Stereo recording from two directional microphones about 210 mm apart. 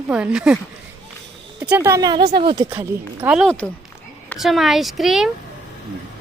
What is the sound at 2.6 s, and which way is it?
A woman's voice, 10° right (ahead or behind).